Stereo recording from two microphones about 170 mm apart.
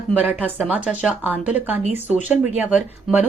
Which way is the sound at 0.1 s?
10° right (ahead or behind).